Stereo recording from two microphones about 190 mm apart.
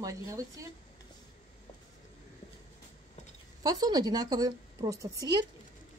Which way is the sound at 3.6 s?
20° right (ahead or behind).